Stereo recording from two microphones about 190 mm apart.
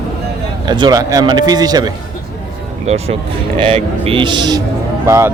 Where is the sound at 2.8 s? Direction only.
35° right (ahead or behind); by 5.3 s 15° right (ahead or behind).